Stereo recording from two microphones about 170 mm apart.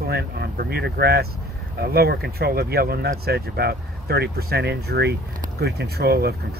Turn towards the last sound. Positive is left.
turn(degrees=-70)  # may be behind; listen again after turning